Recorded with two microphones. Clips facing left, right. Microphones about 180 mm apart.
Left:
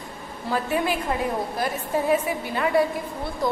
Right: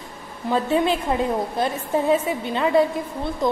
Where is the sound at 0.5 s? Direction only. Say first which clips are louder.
Right 4 dB; 25° right (ahead or behind).